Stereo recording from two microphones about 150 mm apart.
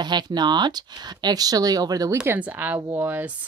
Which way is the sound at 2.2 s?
10° right (ahead or behind).